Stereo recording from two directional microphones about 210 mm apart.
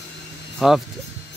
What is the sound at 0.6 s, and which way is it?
Speech, centre (ahead or behind).